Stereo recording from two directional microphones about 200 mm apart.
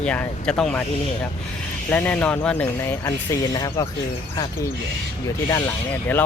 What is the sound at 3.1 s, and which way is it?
Speech, 20° left (ahead or behind).